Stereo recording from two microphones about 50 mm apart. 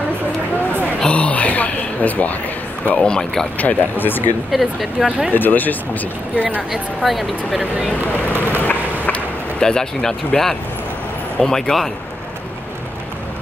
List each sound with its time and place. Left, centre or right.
1.0 s a sound: left
3.0 s speech: centre
3.5 s speech: left
4.5 s speech: centre
5.3 s speech: left
6.3 s speech: right
6.7 s speech: centre
8.6 s a sound: left
9.6 s speech: centre